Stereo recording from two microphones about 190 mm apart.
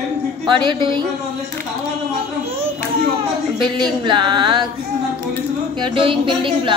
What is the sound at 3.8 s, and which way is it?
Speech, 25° right (ahead or behind).